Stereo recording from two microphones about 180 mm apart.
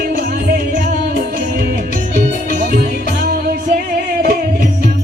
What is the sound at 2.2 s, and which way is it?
Music, 50° right (ahead or behind).